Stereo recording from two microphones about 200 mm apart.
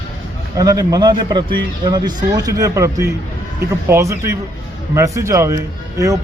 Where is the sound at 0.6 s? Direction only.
15° right (ahead or behind).